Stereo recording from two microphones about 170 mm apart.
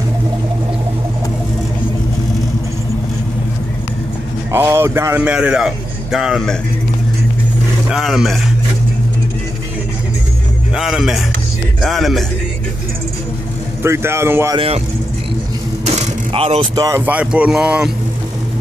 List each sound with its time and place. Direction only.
4.5 s a man's voice: 15° right (ahead or behind)
7.9 s a man's voice: centre (ahead or behind)
10.7 s a man's voice: centre (ahead or behind)
13.8 s a man's voice: 15° right (ahead or behind)
15.8 s vehicle: 40° right (ahead or behind)
16.7 s speech: 20° right (ahead or behind)
17.0 s a man's voice: 10° right (ahead or behind)